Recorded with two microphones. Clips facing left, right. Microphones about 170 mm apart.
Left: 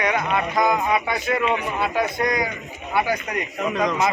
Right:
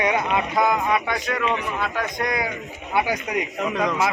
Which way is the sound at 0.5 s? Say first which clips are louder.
Left 1 dB; centre (ahead or behind).